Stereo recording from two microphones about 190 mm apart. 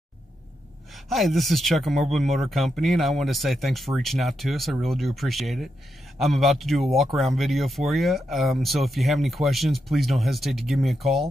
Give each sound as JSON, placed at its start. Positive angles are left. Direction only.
{"t": 1.0, "sound": "speech", "side_deg": 0}